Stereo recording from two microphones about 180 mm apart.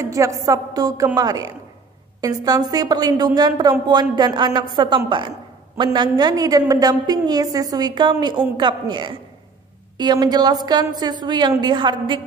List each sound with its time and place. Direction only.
0.0 s a woman's voice: 15° right (ahead or behind)